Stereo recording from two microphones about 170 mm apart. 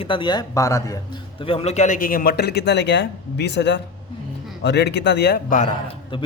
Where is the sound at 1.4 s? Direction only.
35° left (ahead or behind); by 5.3 s 80° left.